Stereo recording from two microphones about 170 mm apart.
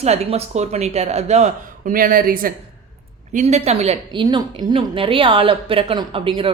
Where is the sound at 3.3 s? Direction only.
40° right (ahead or behind).